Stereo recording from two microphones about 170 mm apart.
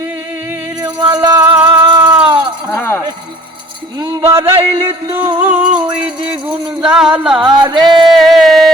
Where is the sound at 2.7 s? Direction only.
15° left (ahead or behind).